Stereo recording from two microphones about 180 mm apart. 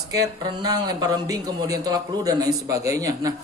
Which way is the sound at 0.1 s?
20° right (ahead or behind).